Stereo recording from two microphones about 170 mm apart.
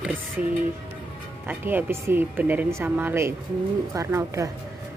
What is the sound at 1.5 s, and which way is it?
Speech, 10° right (ahead or behind).